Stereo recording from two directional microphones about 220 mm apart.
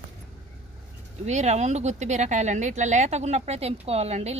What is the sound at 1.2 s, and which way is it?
A woman's voice, 30° right (ahead or behind).